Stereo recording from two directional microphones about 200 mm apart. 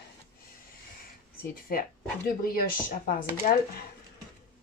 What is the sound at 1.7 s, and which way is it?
Speech, 45° left (ahead or behind).